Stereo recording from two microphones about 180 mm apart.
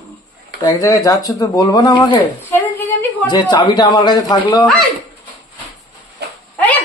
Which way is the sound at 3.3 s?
25° left (ahead or behind).